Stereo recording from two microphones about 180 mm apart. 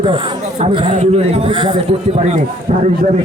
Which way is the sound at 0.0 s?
30° right (ahead or behind).